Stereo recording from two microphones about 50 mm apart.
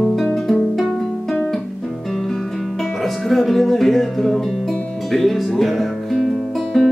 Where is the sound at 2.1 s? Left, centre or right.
Centre.